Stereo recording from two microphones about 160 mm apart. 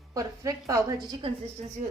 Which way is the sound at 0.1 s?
20° right (ahead or behind).